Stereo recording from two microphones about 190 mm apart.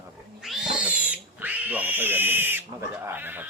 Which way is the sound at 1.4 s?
10° right (ahead or behind).